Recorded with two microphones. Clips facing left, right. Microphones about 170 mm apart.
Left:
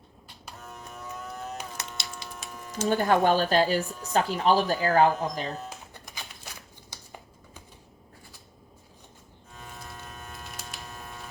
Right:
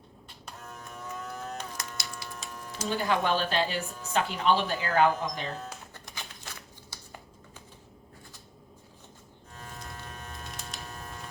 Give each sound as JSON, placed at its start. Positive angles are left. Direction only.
{"t": 0.4, "sound": "a sound", "side_deg": 0}
{"t": 2.4, "sound": "electric shaver", "side_deg": 0}
{"t": 2.9, "sound": "a woman's voice", "side_deg": 50}
{"t": 5.6, "sound": "typewriter", "side_deg": 15}
{"t": 6.9, "sound": "computer keyboard", "side_deg": 15}
{"t": 9.6, "sound": "electric shaver", "side_deg": 0}